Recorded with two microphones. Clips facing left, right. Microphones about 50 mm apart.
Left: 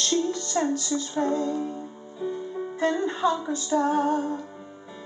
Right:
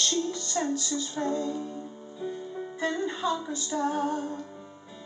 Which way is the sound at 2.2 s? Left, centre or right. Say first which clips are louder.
Left 4 dB; centre.